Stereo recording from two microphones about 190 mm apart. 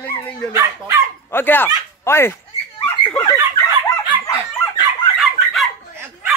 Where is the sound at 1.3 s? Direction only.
10° left (ahead or behind).